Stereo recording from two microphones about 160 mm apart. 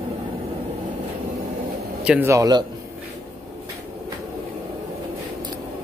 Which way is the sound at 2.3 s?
25° right (ahead or behind).